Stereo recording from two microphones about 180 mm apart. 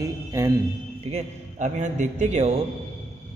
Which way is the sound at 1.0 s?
40° right (ahead or behind).